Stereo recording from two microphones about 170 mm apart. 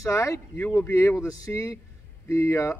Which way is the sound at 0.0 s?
20° left (ahead or behind).